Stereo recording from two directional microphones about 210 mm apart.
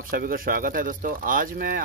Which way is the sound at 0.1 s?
45° right (ahead or behind).